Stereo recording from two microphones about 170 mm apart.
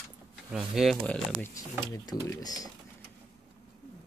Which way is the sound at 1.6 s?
20° left (ahead or behind).